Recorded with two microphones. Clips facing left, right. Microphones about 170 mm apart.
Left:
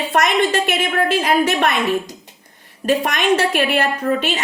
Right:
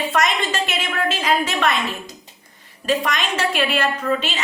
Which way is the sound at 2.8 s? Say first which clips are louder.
Left 5 dB; 55° left (ahead or behind).